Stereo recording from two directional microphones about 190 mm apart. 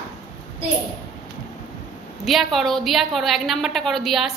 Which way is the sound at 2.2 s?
Centre (ahead or behind).